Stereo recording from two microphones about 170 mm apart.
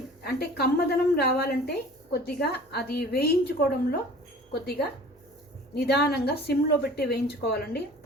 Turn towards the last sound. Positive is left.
turn(degrees=70)  # may be behind; listen again after turning